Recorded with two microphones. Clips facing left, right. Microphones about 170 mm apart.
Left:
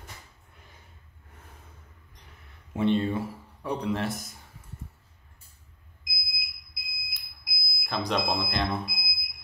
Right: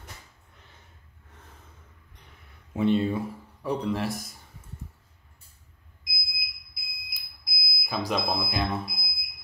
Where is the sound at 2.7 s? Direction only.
Centre (ahead or behind).